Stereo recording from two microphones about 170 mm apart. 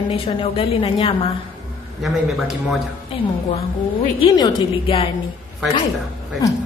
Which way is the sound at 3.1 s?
30° left (ahead or behind).